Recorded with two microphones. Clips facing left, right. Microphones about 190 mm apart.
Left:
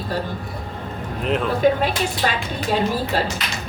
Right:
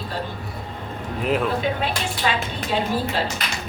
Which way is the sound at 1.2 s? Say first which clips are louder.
Even; 5° right (ahead or behind).